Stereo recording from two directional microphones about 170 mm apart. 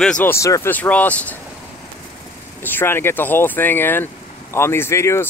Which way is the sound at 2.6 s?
10° left (ahead or behind).